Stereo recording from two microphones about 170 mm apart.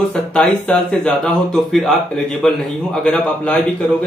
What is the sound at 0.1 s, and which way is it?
Speech, 5° left (ahead or behind).